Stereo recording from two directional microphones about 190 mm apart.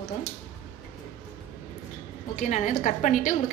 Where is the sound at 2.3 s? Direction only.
40° left (ahead or behind).